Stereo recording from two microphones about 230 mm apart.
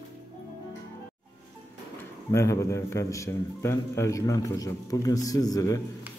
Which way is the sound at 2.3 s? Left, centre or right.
Centre.